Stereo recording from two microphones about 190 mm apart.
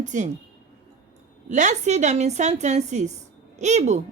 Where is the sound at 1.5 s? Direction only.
40° right (ahead or behind).